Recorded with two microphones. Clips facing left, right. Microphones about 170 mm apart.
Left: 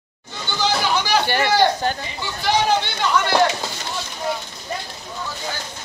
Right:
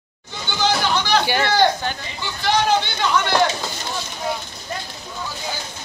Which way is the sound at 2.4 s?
5° left (ahead or behind).